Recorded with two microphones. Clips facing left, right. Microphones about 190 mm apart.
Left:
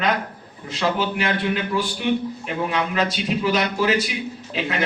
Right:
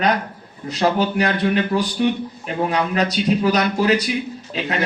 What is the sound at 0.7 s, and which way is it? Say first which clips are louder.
Speech: right 4 dB; 40° right (ahead or behind).